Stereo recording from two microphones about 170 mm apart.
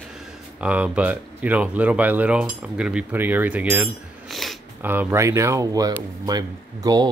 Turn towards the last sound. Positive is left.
turn(degrees=-20)  # may be behind; listen again after turning